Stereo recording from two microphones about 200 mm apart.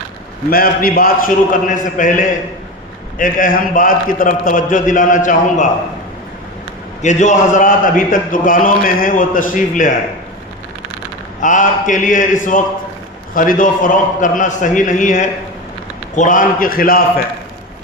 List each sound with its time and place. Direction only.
0.5 s a man's voice: 45° left (ahead or behind)
7.0 s a man's voice: 35° left (ahead or behind)
11.3 s a man's voice: 40° left (ahead or behind)